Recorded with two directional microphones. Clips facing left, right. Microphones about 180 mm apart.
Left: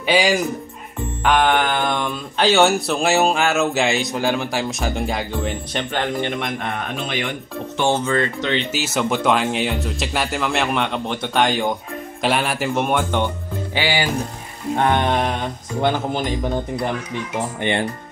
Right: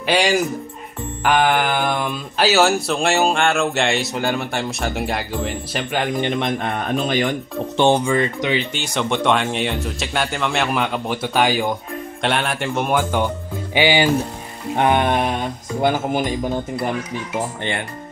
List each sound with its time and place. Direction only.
0.0 s speech: centre (ahead or behind)
6.2 s a man's voice: 20° right (ahead or behind)
7.1 s speech: 35° right (ahead or behind)
7.8 s speech: 15° right (ahead or behind)
8.5 s speech: 5° left (ahead or behind)
13.7 s a man's voice: 20° right (ahead or behind)
17.6 s speech: 15° left (ahead or behind)